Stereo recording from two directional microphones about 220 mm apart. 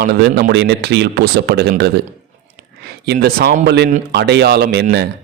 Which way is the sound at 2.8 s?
45° right (ahead or behind).